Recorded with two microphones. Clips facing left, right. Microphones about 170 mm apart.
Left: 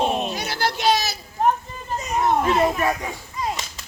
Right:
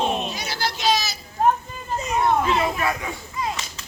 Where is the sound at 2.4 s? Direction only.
40° left (ahead or behind).